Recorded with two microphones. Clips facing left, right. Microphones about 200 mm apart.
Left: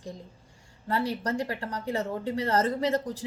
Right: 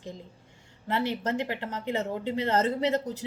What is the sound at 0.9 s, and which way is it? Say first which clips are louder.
A woman's voice: even; 20° right (ahead or behind).